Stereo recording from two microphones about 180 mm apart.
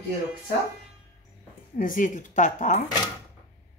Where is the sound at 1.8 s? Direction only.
50° left (ahead or behind).